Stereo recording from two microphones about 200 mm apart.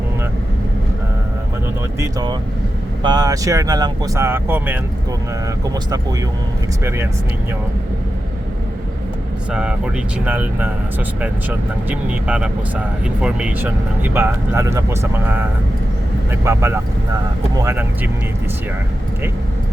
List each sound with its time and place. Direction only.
2.0 s speech: 20° right (ahead or behind)
9.5 s speech: 5° right (ahead or behind)